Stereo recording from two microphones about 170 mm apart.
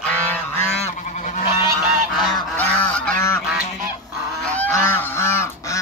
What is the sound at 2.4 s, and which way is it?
Goose, 10° left (ahead or behind).